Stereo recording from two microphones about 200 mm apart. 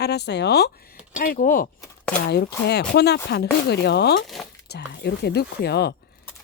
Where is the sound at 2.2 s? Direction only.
55° left (ahead or behind).